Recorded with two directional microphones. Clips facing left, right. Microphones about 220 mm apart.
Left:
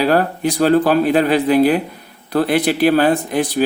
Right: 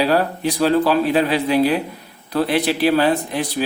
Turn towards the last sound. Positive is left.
turn(degrees=50)  # may be behind; listen again after turning